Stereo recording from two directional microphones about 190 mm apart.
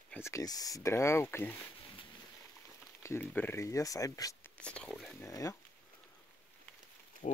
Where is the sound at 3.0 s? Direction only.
10° left (ahead or behind).